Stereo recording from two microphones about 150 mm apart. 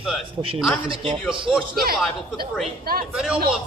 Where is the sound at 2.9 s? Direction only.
90° right.